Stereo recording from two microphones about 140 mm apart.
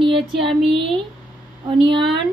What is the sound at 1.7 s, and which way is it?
Speech, 35° right (ahead or behind).